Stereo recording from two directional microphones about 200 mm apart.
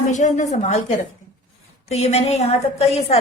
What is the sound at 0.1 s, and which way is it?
Speech, 35° left (ahead or behind).